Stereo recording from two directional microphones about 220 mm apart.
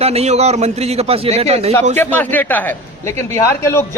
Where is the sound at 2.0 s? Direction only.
10° left (ahead or behind).